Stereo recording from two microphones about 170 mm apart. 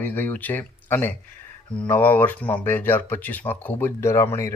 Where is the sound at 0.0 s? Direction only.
10° left (ahead or behind).